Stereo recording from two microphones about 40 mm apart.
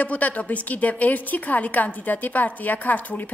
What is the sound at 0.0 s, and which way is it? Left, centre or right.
A woman's voice, left.